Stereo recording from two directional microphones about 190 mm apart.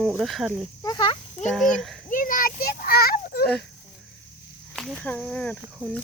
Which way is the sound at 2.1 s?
45° left (ahead or behind).